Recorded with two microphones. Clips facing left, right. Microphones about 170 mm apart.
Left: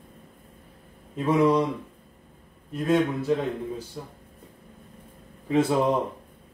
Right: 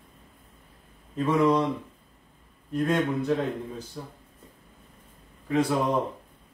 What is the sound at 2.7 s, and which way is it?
Speech, centre (ahead or behind).